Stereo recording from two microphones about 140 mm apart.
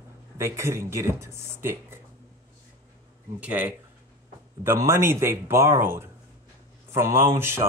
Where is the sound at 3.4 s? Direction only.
10° right (ahead or behind).